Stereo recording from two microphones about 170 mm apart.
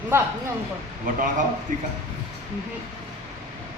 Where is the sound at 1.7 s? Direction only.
50° right (ahead or behind).